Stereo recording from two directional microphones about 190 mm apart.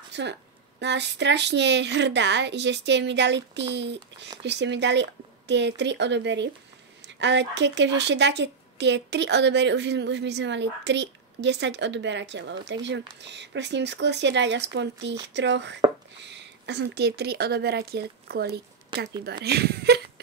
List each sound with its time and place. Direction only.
0.1 s a woman's voice: 65° right (ahead or behind)